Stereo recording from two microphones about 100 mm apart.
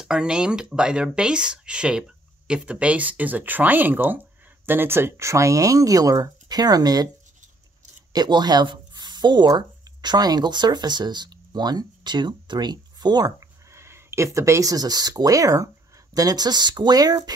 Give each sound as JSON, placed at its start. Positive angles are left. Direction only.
{"t": 0.0, "sound": "speech", "side_deg": -5}
{"t": 8.1, "sound": "speech", "side_deg": -45}
{"t": 13.7, "sound": "speech", "side_deg": -25}